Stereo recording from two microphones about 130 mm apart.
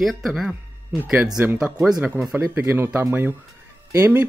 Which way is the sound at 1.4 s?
20° right (ahead or behind).